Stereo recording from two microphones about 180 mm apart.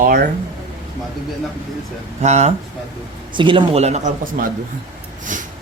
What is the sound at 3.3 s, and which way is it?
Speech, 30° right (ahead or behind).